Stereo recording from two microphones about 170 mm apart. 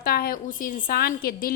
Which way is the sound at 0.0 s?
65° left (ahead or behind).